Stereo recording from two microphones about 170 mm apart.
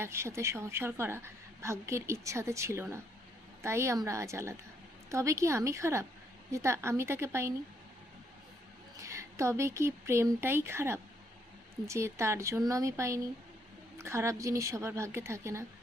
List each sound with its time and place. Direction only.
0.0 s a woman's voice: 15° right (ahead or behind)
9.0 s a woman's voice: 15° right (ahead or behind)